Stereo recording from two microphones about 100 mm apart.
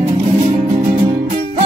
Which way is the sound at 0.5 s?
90° right.